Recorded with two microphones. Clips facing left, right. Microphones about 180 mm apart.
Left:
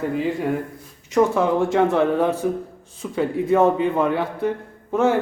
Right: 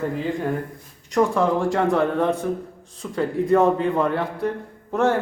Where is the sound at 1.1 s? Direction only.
Centre (ahead or behind).